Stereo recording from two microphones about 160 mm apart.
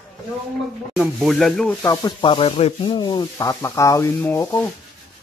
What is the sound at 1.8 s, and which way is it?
Rub, 25° left (ahead or behind).